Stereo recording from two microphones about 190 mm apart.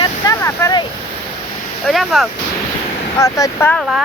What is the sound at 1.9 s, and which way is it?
Speech, centre (ahead or behind).